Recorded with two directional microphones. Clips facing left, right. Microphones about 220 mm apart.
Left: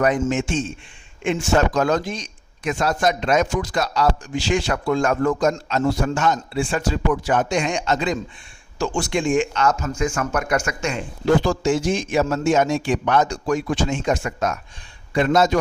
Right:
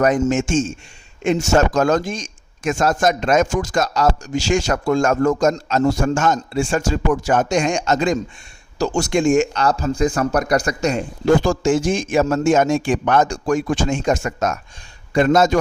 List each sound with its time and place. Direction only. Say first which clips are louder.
0.0 s a man's voice: right 3 dB; 45° right (ahead or behind)